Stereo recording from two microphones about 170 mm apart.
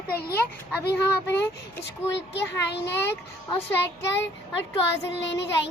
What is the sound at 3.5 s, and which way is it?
Child singing, 15° left (ahead or behind).